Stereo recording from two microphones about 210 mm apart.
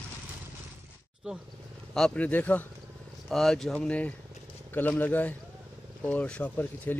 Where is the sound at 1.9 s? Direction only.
5° left (ahead or behind).